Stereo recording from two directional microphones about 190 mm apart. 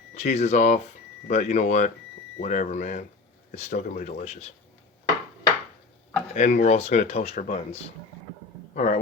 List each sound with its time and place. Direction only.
0.1 s speech: 35° left (ahead or behind)
6.3 s a man's voice: 40° left (ahead or behind)